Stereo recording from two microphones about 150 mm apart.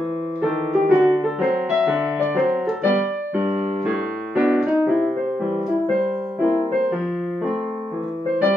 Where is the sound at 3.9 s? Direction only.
5° right (ahead or behind).